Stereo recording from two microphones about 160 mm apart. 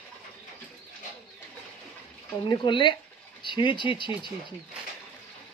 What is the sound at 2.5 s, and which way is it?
Speech, 30° left (ahead or behind).